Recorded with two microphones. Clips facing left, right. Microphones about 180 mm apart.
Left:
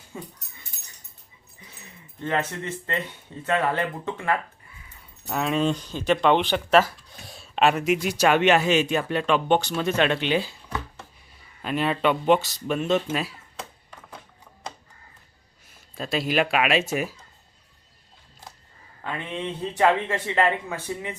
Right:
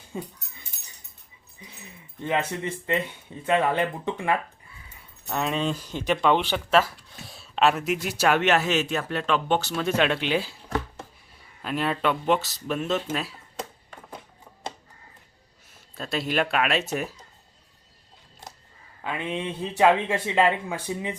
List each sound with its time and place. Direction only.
0.1 s speech: 20° right (ahead or behind)
2.2 s a man's voice: 15° right (ahead or behind)
5.2 s speech: centre (ahead or behind)
5.9 s a man's voice: 20° right (ahead or behind)
11.6 s speech: centre (ahead or behind)
16.0 s speech: 5° left (ahead or behind)
19.0 s a man's voice: 10° right (ahead or behind)